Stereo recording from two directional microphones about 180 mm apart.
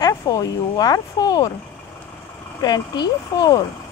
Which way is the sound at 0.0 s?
20° left (ahead or behind).